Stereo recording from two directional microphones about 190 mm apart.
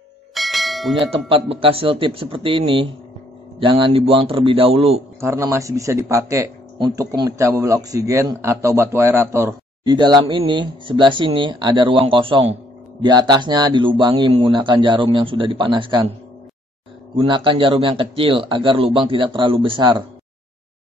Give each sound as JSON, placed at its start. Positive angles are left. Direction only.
{"t": 0.3, "sound": "bell", "side_deg": 0}
{"t": 1.1, "sound": "speech", "side_deg": -30}
{"t": 5.2, "sound": "speech", "side_deg": -15}
{"t": 17.1, "sound": "speech", "side_deg": -25}